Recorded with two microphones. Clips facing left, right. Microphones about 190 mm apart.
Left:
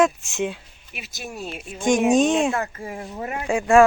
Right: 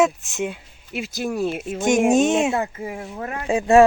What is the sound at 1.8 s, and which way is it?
Speech, 5° right (ahead or behind).